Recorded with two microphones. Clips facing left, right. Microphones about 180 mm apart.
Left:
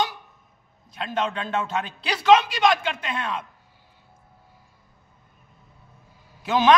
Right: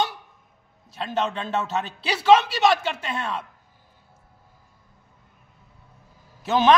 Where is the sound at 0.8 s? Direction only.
5° right (ahead or behind).